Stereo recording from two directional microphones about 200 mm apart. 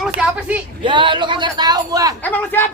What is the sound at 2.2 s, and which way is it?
Speech, 10° left (ahead or behind).